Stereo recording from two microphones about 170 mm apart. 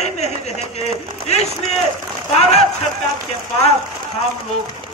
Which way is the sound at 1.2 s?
40° left (ahead or behind).